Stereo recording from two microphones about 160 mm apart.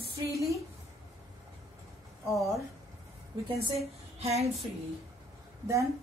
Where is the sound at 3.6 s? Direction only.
40° right (ahead or behind).